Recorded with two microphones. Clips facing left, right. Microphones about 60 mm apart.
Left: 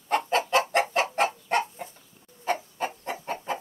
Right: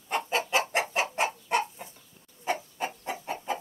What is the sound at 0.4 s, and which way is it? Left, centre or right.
Chicken, left.